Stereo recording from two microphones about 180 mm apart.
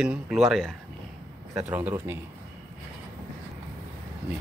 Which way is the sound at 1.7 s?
10° right (ahead or behind).